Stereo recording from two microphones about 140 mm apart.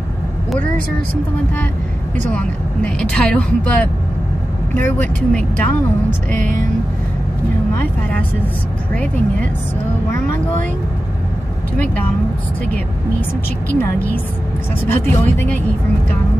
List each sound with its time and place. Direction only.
2.3 s speech: 10° left (ahead or behind)
7.7 s speech: 15° left (ahead or behind)
13.7 s speech: 15° left (ahead or behind)